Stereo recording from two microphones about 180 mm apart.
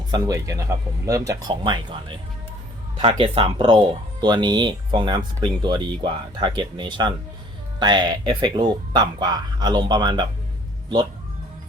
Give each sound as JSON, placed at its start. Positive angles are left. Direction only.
{"t": 0.1, "sound": "speech", "side_deg": -20}